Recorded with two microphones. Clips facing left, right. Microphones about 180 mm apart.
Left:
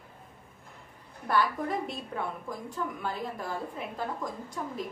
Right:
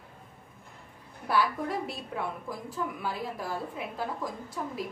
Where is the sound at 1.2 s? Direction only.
5° right (ahead or behind).